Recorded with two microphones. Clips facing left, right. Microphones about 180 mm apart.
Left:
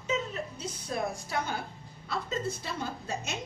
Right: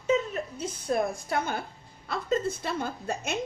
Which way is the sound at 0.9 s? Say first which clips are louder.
Right 5 dB; 55° right (ahead or behind).